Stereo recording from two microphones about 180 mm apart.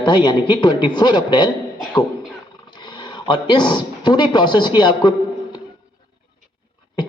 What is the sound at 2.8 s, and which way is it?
Speech, 25° left (ahead or behind).